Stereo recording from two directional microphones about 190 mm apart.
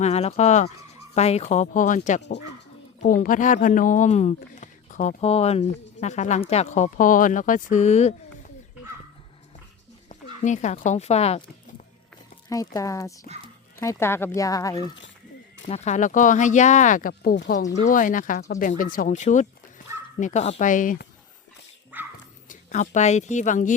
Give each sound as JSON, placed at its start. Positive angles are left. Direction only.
{"t": 0.0, "sound": "speech", "side_deg": 35}
{"t": 10.1, "sound": "speech", "side_deg": 40}
{"t": 12.5, "sound": "speech", "side_deg": 15}
{"t": 15.6, "sound": "speech", "side_deg": 35}
{"t": 21.9, "sound": "dog", "side_deg": -10}
{"t": 22.4, "sound": "a woman's voice", "side_deg": 40}